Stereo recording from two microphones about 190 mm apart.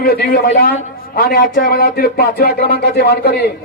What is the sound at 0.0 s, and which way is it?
Speech, 55° left (ahead or behind).